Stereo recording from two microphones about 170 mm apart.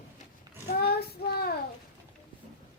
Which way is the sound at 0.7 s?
70° left (ahead or behind).